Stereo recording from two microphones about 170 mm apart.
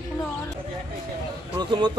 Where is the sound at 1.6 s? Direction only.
25° right (ahead or behind).